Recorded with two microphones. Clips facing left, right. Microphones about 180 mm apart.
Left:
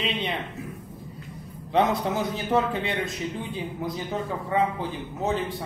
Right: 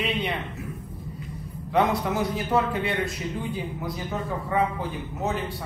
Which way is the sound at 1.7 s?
25° left (ahead or behind).